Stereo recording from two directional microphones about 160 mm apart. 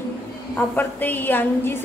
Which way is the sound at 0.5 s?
10° left (ahead or behind).